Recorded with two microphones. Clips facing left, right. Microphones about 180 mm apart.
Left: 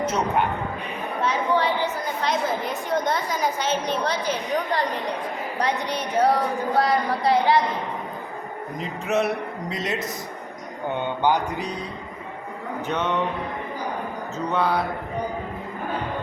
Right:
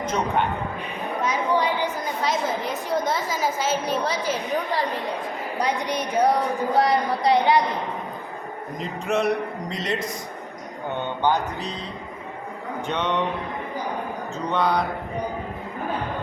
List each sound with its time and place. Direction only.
0.0 s speech: 5° left (ahead or behind)
1.2 s a woman's voice: 10° right (ahead or behind)
2.6 s a woman's voice: centre (ahead or behind); by 7.6 s 20° right (ahead or behind)
8.8 s a woman's voice: 5° left (ahead or behind)
11.2 s mantra: 10° left (ahead or behind)
12.9 s a woman's voice: 5° left (ahead or behind)
14.5 s a woman's voice: 5° left (ahead or behind)